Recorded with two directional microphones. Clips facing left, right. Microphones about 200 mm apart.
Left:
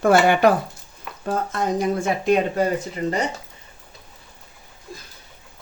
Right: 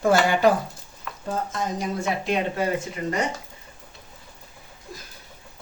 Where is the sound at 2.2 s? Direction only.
45° left (ahead or behind).